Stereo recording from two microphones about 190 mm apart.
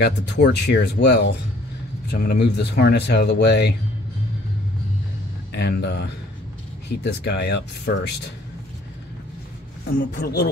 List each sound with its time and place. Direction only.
0.0 s speech: 60° left (ahead or behind)
5.5 s speech: 60° left (ahead or behind)
9.9 s speech: 55° left (ahead or behind)